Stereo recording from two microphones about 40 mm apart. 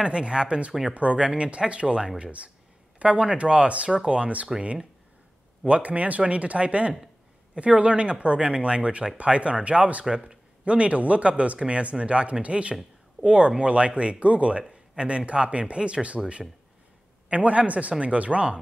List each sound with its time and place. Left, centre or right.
0.0 s speech: right
5.7 s speech: right
10.0 s a man's voice: right